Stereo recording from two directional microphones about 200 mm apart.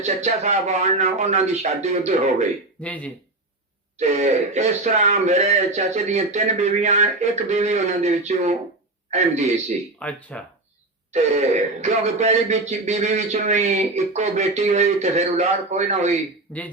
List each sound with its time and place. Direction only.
0.0 s speech: 35° right (ahead or behind)
2.8 s speech: 5° left (ahead or behind)
3.9 s a man's voice: 35° right (ahead or behind)
10.0 s speech: 5° left (ahead or behind)
11.1 s speech: 35° right (ahead or behind)
16.5 s speech: 5° left (ahead or behind)